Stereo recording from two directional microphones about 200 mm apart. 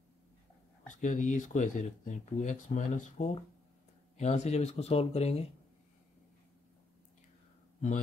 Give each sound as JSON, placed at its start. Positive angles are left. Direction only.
{"t": 0.8, "sound": "speech", "side_deg": 40}